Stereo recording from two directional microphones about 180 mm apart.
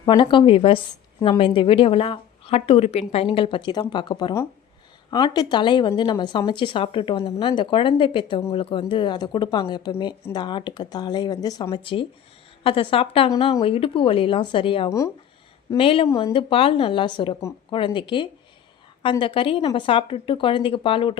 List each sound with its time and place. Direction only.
0.0 s a woman's voice: 25° left (ahead or behind)
14.8 s speech: 15° left (ahead or behind)
15.8 s a woman's voice: 30° left (ahead or behind)